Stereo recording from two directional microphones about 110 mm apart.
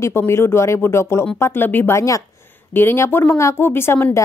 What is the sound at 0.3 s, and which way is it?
Speech, 25° left (ahead or behind).